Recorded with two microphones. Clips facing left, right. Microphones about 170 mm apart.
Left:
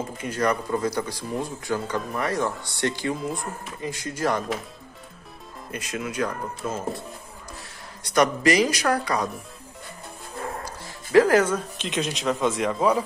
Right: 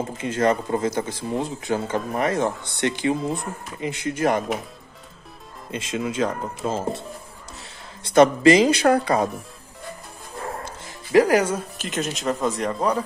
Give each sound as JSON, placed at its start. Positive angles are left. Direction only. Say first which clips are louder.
{"t": 0.2, "sound": "speech", "louder": "right 4 dB", "side_deg": -25}
{"t": 5.7, "sound": "speech", "louder": "right 4 dB", "side_deg": -25}
{"t": 10.6, "sound": "speech", "louder": "right 1 dB", "side_deg": -15}